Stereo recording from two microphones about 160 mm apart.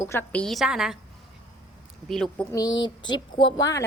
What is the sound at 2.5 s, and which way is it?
A woman's voice, 25° left (ahead or behind).